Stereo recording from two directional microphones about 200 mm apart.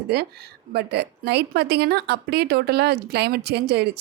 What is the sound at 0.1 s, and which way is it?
A woman's voice, 55° right (ahead or behind).